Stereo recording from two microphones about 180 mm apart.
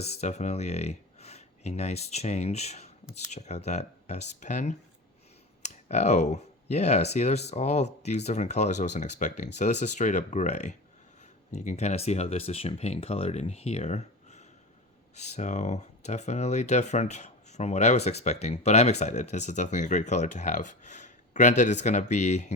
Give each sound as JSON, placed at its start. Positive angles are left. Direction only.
{"t": 0.1, "sound": "speech", "side_deg": 40}